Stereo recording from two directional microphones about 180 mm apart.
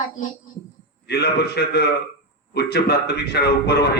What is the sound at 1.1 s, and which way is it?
A man's voice, 65° left (ahead or behind).